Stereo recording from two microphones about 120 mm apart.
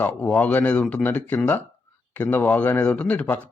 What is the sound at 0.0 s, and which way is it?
Speech, 15° left (ahead or behind).